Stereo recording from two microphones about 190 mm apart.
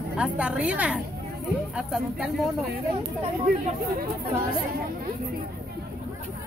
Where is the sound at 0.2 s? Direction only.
5° right (ahead or behind).